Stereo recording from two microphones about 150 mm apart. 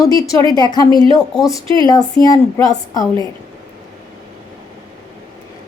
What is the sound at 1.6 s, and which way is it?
Speech, 35° right (ahead or behind).